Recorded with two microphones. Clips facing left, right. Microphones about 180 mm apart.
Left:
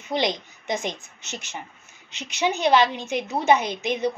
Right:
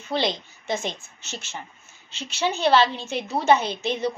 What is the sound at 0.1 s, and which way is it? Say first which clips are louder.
A woman's voice: left 1 dB; 15° left (ahead or behind).